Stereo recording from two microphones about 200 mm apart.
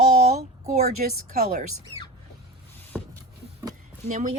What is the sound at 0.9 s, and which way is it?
Speech, 45° right (ahead or behind).